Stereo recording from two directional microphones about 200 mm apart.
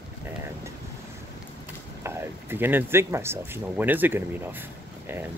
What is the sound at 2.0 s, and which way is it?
Speech, 10° right (ahead or behind).